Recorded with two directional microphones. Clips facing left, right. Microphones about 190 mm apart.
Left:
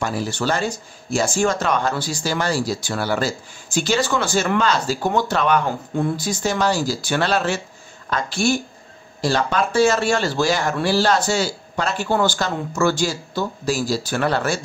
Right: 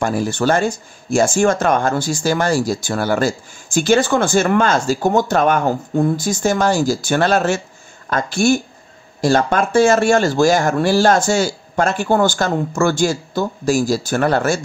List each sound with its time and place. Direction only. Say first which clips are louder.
0.0 s speech: right 5 dB; 50° right (ahead or behind)